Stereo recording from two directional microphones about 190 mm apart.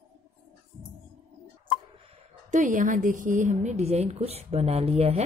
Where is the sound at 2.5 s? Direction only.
40° right (ahead or behind).